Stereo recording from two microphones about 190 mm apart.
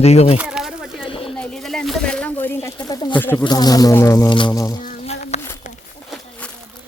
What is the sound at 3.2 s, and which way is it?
Speech, 10° left (ahead or behind).